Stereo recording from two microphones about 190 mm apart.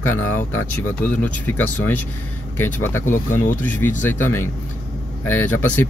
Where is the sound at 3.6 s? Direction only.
10° left (ahead or behind).